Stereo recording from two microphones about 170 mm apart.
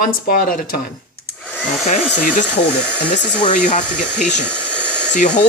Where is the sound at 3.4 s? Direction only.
45° left (ahead or behind).